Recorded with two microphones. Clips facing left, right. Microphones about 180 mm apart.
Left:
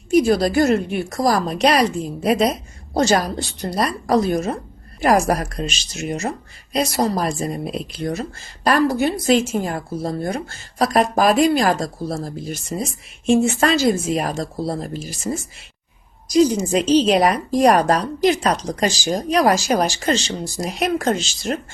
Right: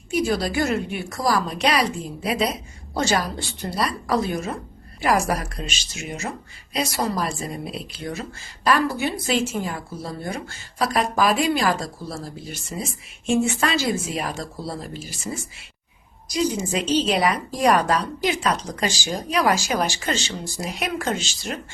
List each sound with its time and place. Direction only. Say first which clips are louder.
0.1 s a woman's voice: left 7 dB; 45° left (ahead or behind)